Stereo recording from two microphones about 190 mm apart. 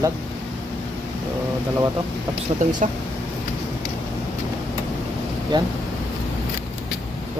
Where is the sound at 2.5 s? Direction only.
30° right (ahead or behind).